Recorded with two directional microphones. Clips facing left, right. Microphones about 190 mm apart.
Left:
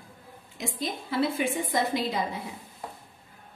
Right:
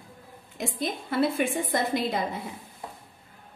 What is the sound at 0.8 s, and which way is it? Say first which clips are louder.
A woman's voice: right 2 dB; 55° right (ahead or behind).